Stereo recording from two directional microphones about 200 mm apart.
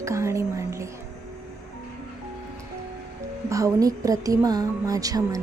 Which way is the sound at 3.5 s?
15° right (ahead or behind).